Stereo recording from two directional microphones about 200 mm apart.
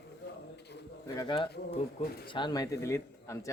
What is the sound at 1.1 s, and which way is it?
Speech, 25° left (ahead or behind).